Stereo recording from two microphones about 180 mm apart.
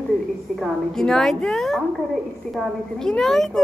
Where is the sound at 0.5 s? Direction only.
Centre (ahead or behind).